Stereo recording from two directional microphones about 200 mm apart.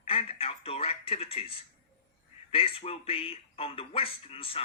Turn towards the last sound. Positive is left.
turn(degrees=30)  # may be behind; listen again after turning